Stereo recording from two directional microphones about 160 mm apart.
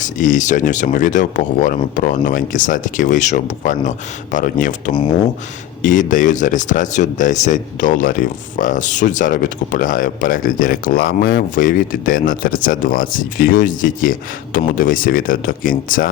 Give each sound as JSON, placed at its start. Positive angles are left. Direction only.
{"t": 0.0, "sound": "speech", "side_deg": 55}